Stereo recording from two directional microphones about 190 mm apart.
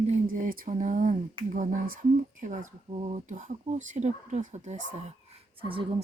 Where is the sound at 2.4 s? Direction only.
40° right (ahead or behind).